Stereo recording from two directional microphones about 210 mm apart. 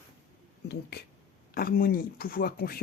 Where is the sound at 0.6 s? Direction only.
50° left (ahead or behind).